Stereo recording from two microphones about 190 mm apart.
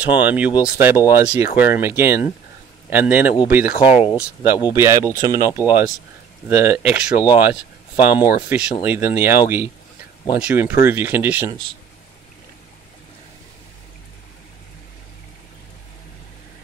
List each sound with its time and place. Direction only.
0.0 s speech: 10° right (ahead or behind)